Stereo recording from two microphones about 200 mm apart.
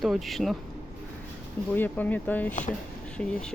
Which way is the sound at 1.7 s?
10° left (ahead or behind).